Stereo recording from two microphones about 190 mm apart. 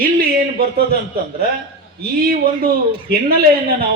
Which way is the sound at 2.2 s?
50° right (ahead or behind).